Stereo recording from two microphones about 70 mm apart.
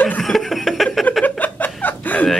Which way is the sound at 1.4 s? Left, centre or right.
Left.